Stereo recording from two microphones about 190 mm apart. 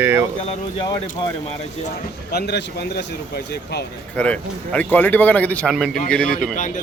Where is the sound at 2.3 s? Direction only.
60° left (ahead or behind).